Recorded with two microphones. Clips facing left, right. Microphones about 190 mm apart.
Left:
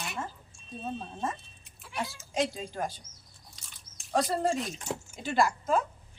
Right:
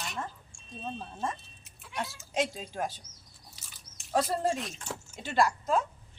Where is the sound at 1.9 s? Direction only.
Centre (ahead or behind).